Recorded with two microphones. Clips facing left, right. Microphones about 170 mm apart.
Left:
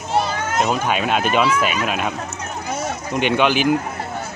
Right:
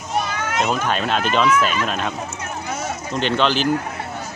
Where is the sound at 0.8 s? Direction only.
10° left (ahead or behind).